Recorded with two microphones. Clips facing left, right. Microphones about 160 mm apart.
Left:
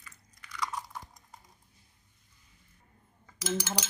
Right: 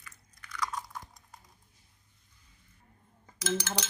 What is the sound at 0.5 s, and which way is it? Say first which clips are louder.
Chewing: even; 5° left (ahead or behind).